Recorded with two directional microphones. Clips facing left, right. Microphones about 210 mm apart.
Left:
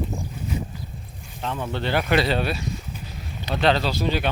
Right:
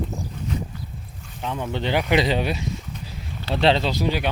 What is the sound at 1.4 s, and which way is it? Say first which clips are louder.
Speech: right 1 dB; 15° right (ahead or behind).